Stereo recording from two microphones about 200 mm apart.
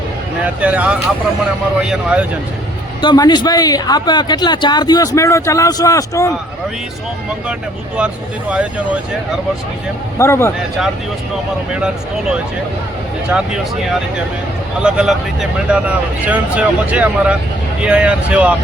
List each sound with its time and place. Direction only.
0.4 s speech: 5° right (ahead or behind)
3.0 s a man's voice: 20° left (ahead or behind)
7.9 s speech: 5° right (ahead or behind)
10.2 s a man's voice: 15° left (ahead or behind)
11.7 s speech: 5° right (ahead or behind)
14.8 s speech: 5° right (ahead or behind)